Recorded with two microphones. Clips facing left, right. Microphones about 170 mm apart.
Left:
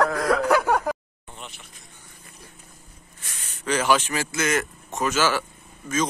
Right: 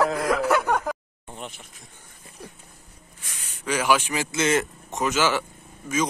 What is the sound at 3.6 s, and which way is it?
Speech, 10° right (ahead or behind).